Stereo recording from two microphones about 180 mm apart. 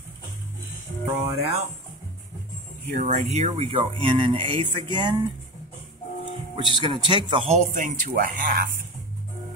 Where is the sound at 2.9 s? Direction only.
40° right (ahead or behind).